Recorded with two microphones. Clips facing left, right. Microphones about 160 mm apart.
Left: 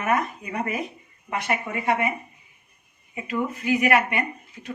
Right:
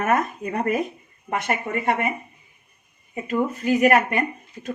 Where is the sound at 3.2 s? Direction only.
40° right (ahead or behind).